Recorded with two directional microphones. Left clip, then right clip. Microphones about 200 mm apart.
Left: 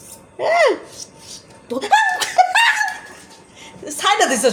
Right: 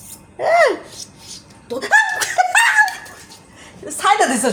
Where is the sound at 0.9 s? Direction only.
15° left (ahead or behind).